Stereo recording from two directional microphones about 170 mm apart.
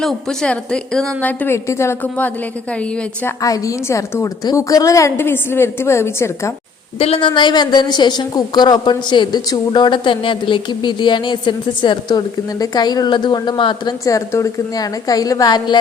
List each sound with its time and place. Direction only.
0.0 s a woman's voice: 5° left (ahead or behind)
7.0 s a woman's voice: 35° left (ahead or behind)